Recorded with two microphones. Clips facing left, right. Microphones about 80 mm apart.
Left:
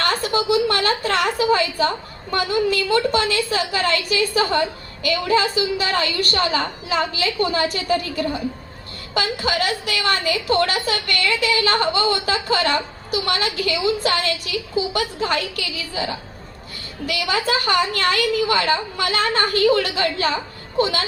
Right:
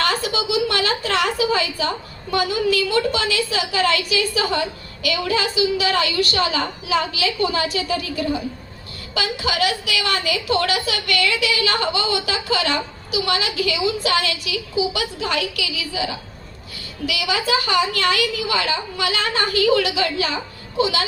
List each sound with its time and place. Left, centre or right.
0.0 s a sound: left
2.3 s a woman's voice: left
17.1 s a woman's voice: left